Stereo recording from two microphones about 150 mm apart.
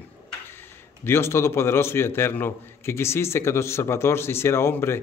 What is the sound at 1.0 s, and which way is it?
A man's voice, 15° left (ahead or behind).